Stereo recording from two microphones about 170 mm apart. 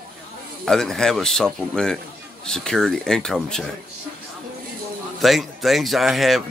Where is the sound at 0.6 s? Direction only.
Centre (ahead or behind).